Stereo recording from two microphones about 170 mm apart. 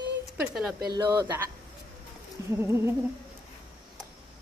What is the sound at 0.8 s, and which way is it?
Speech, 20° right (ahead or behind).